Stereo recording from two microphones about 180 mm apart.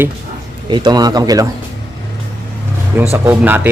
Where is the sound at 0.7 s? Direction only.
25° right (ahead or behind).